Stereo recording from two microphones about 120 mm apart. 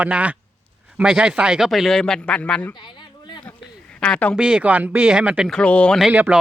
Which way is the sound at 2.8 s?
40° left (ahead or behind).